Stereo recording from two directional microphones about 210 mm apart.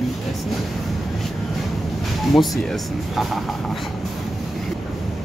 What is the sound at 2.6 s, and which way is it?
Speech, centre (ahead or behind).